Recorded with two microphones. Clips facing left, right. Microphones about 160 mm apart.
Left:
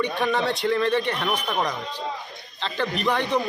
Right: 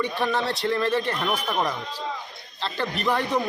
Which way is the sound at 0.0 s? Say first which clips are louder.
Left 2 dB; centre (ahead or behind).